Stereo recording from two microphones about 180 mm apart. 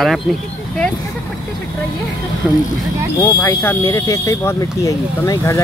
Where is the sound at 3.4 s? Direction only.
15° left (ahead or behind).